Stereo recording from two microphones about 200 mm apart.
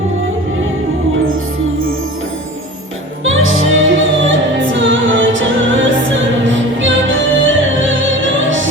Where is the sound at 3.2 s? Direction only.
85° right.